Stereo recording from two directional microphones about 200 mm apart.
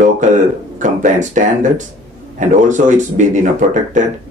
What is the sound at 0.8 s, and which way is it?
Speech, 40° right (ahead or behind).